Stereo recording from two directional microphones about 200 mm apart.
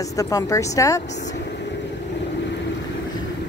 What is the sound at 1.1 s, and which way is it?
Vehicle, 60° left (ahead or behind).